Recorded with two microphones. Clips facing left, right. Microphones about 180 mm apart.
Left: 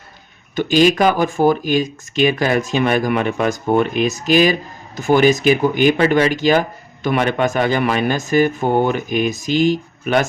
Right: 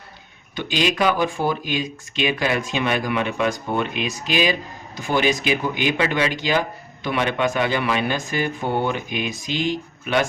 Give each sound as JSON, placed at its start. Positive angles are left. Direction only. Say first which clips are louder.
{"t": 0.5, "sound": "speech", "louder": "left 9 dB", "side_deg": 45}